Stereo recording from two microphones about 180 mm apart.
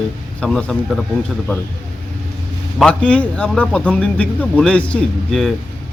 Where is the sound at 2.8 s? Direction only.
5° left (ahead or behind).